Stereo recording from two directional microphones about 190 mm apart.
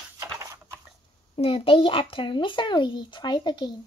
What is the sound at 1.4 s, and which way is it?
A child's voice, 30° left (ahead or behind).